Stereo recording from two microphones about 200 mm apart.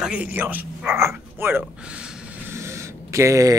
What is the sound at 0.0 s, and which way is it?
Speech, 5° right (ahead or behind).